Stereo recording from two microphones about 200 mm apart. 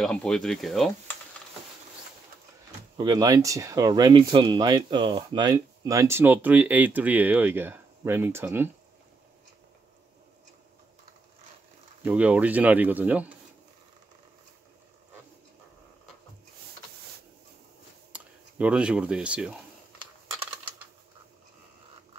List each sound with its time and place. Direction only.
0.0 s speech: 5° left (ahead or behind)
3.0 s speech: 20° right (ahead or behind)
12.0 s speech: 5° right (ahead or behind)
18.1 s speech: 5° right (ahead or behind)